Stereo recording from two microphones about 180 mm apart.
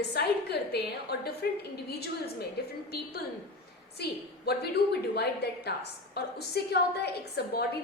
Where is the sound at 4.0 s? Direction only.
65° left (ahead or behind).